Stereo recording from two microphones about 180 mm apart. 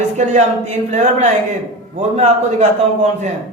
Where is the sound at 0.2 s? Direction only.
40° right (ahead or behind).